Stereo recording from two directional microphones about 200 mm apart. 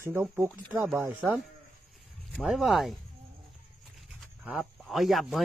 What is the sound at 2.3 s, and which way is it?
Speech, centre (ahead or behind).